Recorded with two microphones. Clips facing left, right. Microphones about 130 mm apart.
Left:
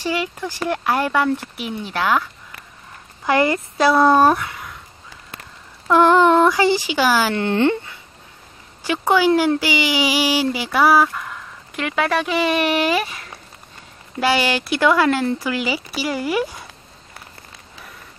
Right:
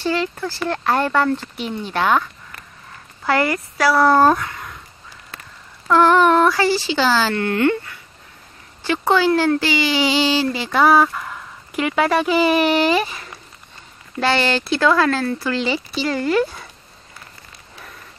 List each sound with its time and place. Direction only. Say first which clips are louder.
0.0 s speech: right 2 dB; 10° left (ahead or behind)
3.3 s speech: left 1 dB; 20° left (ahead or behind)
5.9 s speech: even; 20° left (ahead or behind); by 13.3 s centre (ahead or behind)
14.2 s speech: even; 10° left (ahead or behind)